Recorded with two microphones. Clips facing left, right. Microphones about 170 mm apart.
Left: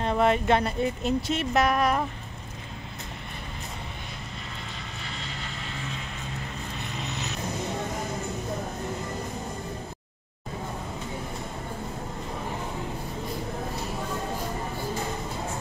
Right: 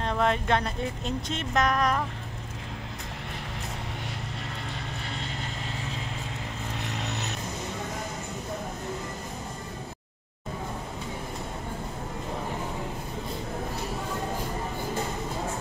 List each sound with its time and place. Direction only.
0.0 s speech: 5° left (ahead or behind)
6.8 s vehicle: 65° right (ahead or behind)